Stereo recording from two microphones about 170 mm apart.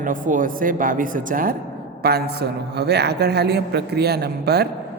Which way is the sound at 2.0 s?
70° right (ahead or behind).